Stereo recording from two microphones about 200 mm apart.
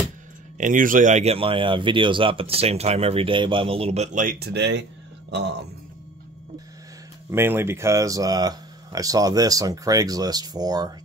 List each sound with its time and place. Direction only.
0.6 s speech: 40° right (ahead or behind); by 4.8 s 60° right (ahead or behind)
7.2 s speech: 10° right (ahead or behind)